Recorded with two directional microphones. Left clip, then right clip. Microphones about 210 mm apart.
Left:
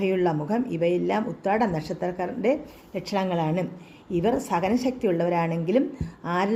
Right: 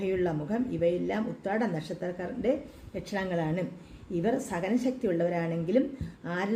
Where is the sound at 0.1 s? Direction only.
20° left (ahead or behind).